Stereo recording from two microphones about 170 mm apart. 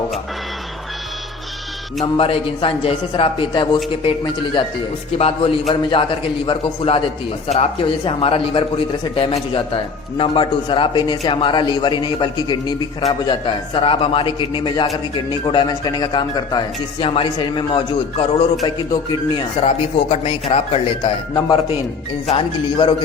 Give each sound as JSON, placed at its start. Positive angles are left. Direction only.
{"t": 2.1, "sound": "a man's voice", "side_deg": 35}
{"t": 22.3, "sound": "a man's voice", "side_deg": 30}